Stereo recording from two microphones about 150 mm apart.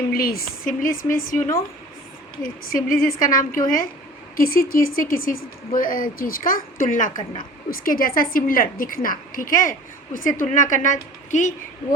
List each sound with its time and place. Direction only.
0.1 s speech: 80° left; by 7.1 s 60° left (ahead or behind)
7.3 s a woman's voice: 75° left (ahead or behind); by 11.9 s 55° left (ahead or behind)